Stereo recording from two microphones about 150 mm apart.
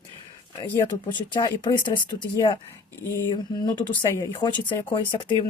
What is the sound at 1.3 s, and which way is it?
Speech, 30° left (ahead or behind).